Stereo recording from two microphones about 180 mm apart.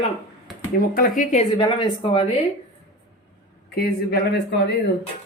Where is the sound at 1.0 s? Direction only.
45° left (ahead or behind).